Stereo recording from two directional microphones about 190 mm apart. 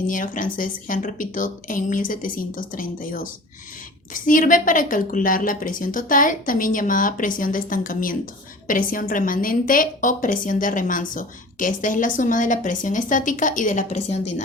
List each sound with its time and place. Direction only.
0.1 s a woman's voice: 45° left (ahead or behind)